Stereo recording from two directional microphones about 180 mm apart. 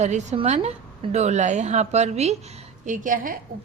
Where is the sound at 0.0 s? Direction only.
40° right (ahead or behind).